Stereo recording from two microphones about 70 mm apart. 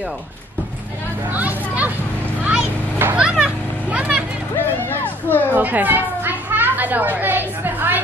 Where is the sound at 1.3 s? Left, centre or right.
Right.